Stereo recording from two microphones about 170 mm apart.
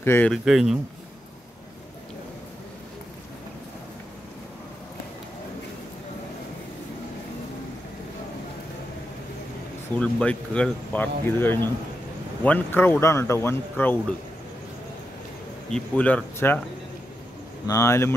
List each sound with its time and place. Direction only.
0.0 s speech: 15° left (ahead or behind)
0.3 s speech: 5° right (ahead or behind)
9.9 s speech: 5° left (ahead or behind)
15.7 s speech: 5° left (ahead or behind)
17.6 s speech: 15° left (ahead or behind)